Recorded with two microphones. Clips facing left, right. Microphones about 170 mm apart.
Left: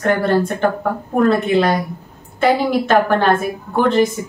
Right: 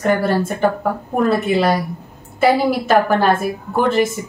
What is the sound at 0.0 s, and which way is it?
A woman's voice, 5° right (ahead or behind).